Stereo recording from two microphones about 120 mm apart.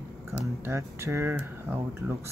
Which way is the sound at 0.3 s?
20° right (ahead or behind).